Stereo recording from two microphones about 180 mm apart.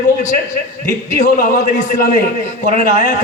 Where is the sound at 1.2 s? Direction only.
45° left (ahead or behind).